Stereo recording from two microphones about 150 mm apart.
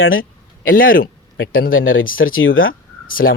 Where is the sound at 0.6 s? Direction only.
70° left (ahead or behind).